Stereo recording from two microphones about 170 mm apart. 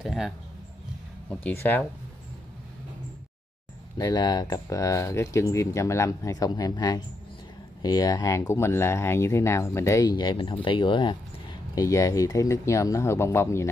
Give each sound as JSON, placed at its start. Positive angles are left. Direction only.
{"t": 0.0, "sound": "speech", "side_deg": 0}
{"t": 1.4, "sound": "speech", "side_deg": 10}
{"t": 4.0, "sound": "speech", "side_deg": 20}